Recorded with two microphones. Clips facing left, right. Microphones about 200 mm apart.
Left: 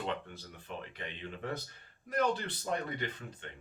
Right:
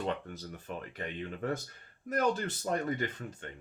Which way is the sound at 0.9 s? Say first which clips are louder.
Right 5 dB; 45° right (ahead or behind).